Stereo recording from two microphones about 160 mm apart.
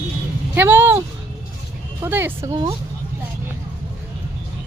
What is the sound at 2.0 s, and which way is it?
Speech, 15° right (ahead or behind).